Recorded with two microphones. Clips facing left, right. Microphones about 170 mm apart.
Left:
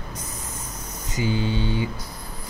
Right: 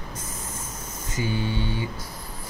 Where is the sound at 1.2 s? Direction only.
15° left (ahead or behind).